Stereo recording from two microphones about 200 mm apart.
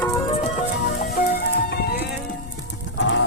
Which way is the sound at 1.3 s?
50° left (ahead or behind).